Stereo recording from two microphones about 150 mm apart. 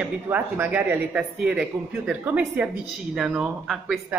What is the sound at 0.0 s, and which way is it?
Speech, 10° right (ahead or behind).